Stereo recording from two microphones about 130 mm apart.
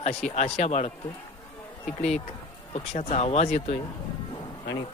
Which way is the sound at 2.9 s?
55° left (ahead or behind).